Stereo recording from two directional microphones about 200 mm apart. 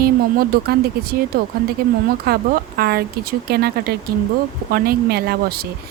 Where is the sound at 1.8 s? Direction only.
50° right (ahead or behind).